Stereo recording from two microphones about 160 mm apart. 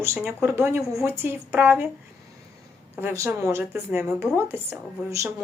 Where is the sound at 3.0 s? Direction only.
15° right (ahead or behind).